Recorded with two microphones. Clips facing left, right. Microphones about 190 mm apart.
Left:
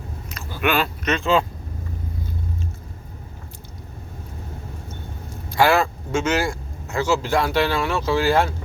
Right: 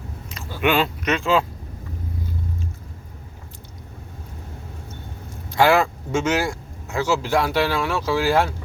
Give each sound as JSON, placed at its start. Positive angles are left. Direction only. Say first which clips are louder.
{"t": 0.3, "sound": "speech", "louder": "right 2 dB", "side_deg": -25}
{"t": 5.5, "sound": "speech", "louder": "right 1 dB", "side_deg": -20}